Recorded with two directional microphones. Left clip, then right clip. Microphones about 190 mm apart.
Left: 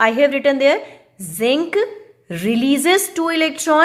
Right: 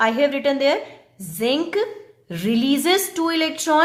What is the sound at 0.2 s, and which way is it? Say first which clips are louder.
A woman's voice: left 4 dB; 15° left (ahead or behind).